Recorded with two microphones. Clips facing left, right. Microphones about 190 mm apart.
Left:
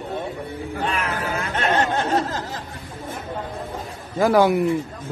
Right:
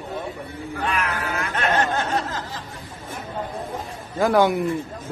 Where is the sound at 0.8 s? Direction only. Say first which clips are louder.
Even; 25° left (ahead or behind).